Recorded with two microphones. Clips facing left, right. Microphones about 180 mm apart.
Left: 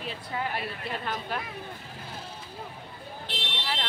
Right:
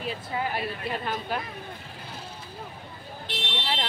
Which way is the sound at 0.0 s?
5° right (ahead or behind).